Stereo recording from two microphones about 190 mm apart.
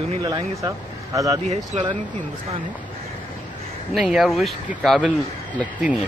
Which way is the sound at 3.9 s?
5° right (ahead or behind).